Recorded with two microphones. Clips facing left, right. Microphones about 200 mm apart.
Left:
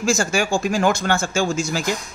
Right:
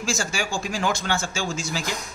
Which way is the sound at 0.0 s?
50° left (ahead or behind).